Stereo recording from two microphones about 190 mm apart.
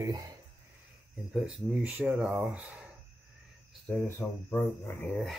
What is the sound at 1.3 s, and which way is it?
Speech, 5° right (ahead or behind).